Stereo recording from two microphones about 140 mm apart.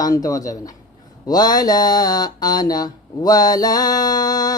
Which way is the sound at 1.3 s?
30° left (ahead or behind).